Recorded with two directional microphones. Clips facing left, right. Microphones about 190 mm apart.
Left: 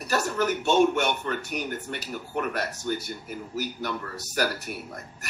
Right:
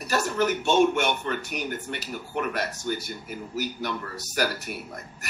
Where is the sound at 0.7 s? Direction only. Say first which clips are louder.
Even; 40° left (ahead or behind).